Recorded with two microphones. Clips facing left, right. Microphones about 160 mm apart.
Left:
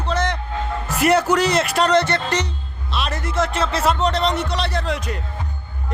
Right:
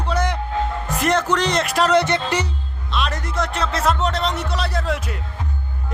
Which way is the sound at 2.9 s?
Centre (ahead or behind).